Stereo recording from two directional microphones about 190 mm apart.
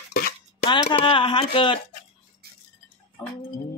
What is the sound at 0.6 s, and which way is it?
Speech, 25° left (ahead or behind).